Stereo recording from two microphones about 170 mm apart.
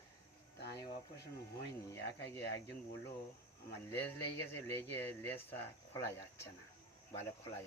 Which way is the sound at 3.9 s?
15° left (ahead or behind).